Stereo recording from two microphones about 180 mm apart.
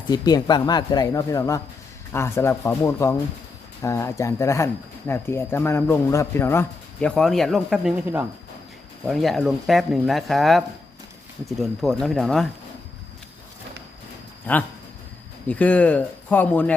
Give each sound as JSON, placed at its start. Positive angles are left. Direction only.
{"t": 0.1, "sound": "speech", "side_deg": 20}
{"t": 15.4, "sound": "speech", "side_deg": 5}